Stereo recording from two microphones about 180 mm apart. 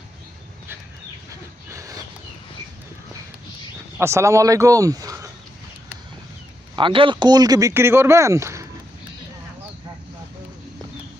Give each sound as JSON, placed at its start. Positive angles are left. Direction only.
{"t": 1.7, "sound": "a sound", "side_deg": -20}
{"t": 3.9, "sound": "speech", "side_deg": -15}
{"t": 6.7, "sound": "speech", "side_deg": -30}